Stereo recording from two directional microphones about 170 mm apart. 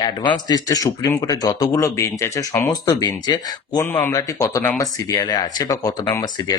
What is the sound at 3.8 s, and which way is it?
Speech, 10° left (ahead or behind).